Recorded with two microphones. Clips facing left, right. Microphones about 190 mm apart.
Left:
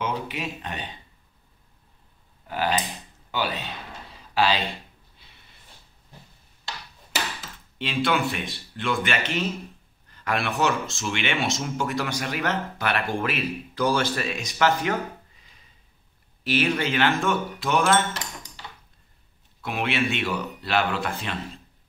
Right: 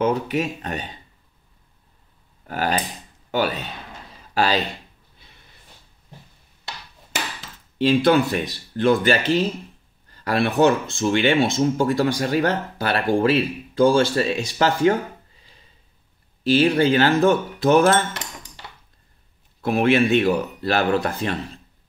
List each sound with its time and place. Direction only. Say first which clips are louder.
0.0 s speech: right 8 dB; 45° right (ahead or behind)
2.4 s speech: right 2 dB; 45° right (ahead or behind)
7.8 s speech: right 8 dB; 40° right (ahead or behind)
16.4 s speech: right 8 dB; 30° right (ahead or behind)
19.6 s speech: right 9 dB; 40° right (ahead or behind)